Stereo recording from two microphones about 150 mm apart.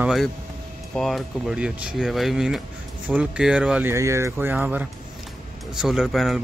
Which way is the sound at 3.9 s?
20° right (ahead or behind).